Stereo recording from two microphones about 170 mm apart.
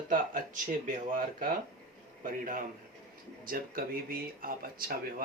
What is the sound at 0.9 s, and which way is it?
Speech, 55° right (ahead or behind).